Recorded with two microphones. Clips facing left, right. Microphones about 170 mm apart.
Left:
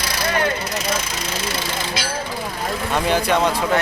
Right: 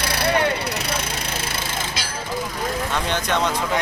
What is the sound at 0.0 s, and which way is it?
Vehicle, 60° right (ahead or behind).